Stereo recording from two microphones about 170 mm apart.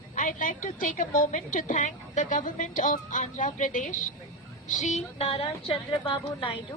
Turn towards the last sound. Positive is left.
turn(degrees=30)  # may be behind; listen again after turning